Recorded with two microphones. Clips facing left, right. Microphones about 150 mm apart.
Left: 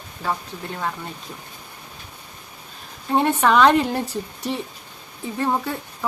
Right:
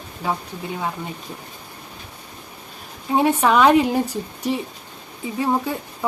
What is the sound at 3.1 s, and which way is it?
Speech, 10° right (ahead or behind).